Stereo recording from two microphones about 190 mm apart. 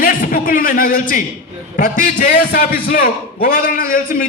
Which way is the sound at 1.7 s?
45° left (ahead or behind).